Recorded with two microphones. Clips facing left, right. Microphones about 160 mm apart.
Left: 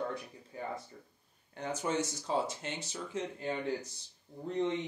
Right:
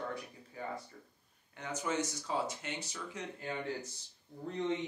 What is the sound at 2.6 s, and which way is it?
Speech, 30° left (ahead or behind).